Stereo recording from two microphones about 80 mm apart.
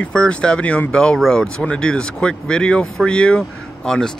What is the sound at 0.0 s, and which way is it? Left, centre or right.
Speech, centre.